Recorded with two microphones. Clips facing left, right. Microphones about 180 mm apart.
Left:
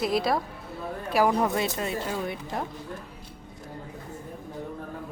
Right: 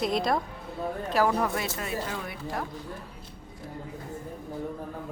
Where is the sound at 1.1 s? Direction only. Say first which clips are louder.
Left 3 dB; 15° left (ahead or behind).